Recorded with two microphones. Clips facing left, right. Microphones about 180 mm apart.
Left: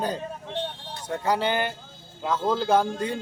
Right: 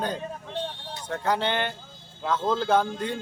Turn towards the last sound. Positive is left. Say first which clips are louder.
# left 1 dB
turn(degrees=10)  # may be behind; listen again after turning